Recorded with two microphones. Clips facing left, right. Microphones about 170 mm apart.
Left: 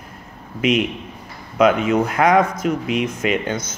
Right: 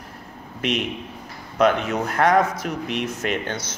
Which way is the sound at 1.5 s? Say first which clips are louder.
Left 4 dB; 10° left (ahead or behind).